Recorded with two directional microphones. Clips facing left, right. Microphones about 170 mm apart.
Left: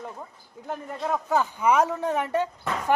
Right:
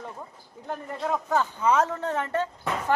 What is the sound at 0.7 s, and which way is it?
Speech, 5° left (ahead or behind).